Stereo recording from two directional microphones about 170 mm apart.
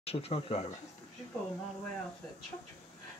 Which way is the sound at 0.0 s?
35° left (ahead or behind).